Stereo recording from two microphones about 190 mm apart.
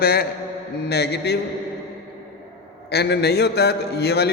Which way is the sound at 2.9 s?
60° left (ahead or behind).